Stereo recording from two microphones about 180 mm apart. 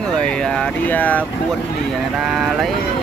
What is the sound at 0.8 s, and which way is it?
Speech, 10° left (ahead or behind).